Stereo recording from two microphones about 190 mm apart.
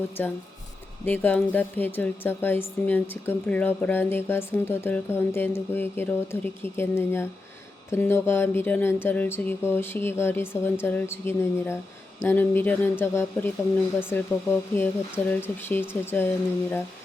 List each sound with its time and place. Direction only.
0.2 s speech: 10° left (ahead or behind)